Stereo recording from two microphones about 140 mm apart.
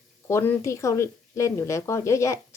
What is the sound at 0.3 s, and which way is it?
A woman's voice, 20° left (ahead or behind).